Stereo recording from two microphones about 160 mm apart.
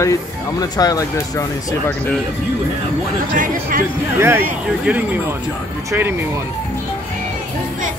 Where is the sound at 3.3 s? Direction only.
60° right (ahead or behind).